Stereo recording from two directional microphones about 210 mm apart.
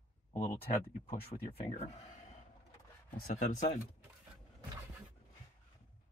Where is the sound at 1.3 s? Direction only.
30° left (ahead or behind).